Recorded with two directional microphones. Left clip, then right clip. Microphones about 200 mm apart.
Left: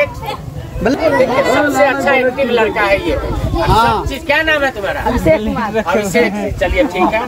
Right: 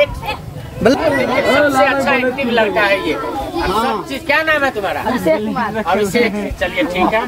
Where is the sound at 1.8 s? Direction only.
5° left (ahead or behind).